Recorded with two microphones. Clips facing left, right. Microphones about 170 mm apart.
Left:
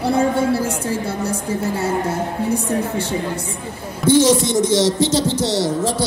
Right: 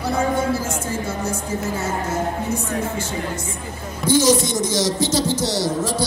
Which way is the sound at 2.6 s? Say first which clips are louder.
Left 4 dB; 35° left (ahead or behind).